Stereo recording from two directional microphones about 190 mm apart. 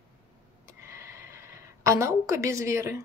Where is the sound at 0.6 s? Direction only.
15° right (ahead or behind).